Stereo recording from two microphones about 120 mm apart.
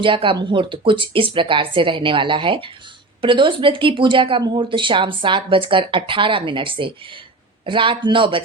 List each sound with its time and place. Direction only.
0.0 s speech: 45° right (ahead or behind)